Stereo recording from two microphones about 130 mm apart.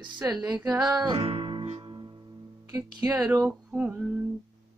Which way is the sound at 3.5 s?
10° right (ahead or behind).